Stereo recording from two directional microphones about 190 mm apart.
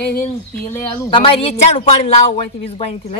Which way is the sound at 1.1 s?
25° left (ahead or behind).